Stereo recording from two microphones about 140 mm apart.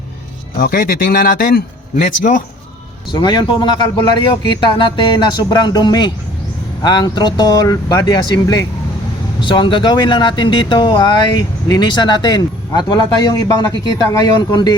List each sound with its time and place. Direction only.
0.6 s a man's voice: 85° left; by 2.4 s 70° left (ahead or behind)
3.1 s speech: 30° left (ahead or behind)